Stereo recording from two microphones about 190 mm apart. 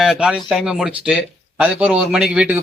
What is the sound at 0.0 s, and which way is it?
A man's voice, 5° right (ahead or behind).